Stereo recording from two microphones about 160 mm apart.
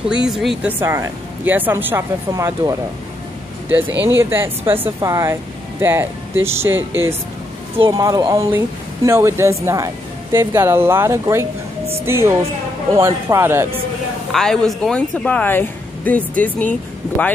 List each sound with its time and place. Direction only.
0.2 s speech: centre (ahead or behind)
0.7 s speech: 15° right (ahead or behind)
4.0 s speech: 15° right (ahead or behind)
14.3 s speech: 5° left (ahead or behind)